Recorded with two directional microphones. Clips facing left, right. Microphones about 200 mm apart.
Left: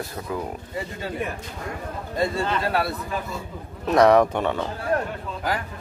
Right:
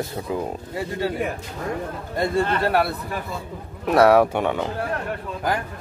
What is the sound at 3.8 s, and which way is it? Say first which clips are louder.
Speech: right 1 dB; 5° right (ahead or behind).